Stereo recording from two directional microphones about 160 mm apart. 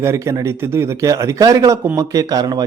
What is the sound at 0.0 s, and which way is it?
Speech, 20° right (ahead or behind).